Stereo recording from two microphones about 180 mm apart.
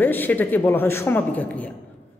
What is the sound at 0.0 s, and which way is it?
A woman's voice, 10° left (ahead or behind).